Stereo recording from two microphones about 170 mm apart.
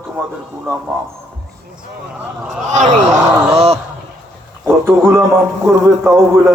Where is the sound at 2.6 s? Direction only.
45° right (ahead or behind).